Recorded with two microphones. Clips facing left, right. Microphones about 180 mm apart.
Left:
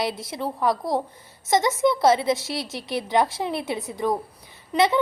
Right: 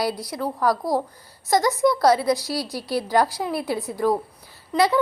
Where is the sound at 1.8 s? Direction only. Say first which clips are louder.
Right 1 dB; 25° left (ahead or behind).